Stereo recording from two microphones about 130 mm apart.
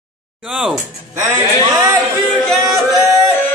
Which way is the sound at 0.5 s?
5° right (ahead or behind).